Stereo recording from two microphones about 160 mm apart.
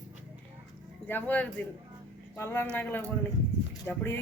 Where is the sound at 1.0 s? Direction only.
10° left (ahead or behind).